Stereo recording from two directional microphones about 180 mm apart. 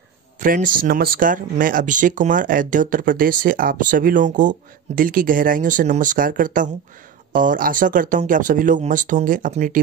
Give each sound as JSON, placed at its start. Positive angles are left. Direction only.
{"t": 0.4, "sound": "speech", "side_deg": -50}